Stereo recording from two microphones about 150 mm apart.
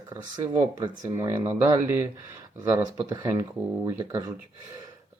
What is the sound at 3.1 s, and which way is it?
Speech, 25° right (ahead or behind).